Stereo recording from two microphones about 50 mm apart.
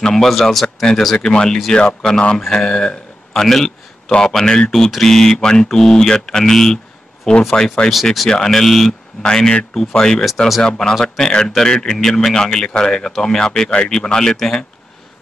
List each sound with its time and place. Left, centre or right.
0.0 s speech: centre
1.1 s a man's voice: centre